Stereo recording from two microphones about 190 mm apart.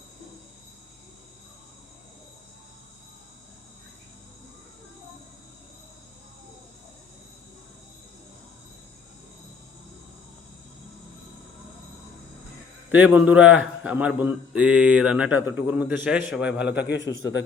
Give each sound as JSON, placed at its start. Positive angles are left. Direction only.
{"t": 12.9, "sound": "a man's voice", "side_deg": -5}
{"t": 16.6, "sound": "a man's voice", "side_deg": 65}